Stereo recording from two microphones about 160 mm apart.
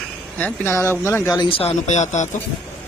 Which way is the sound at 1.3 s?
35° left (ahead or behind).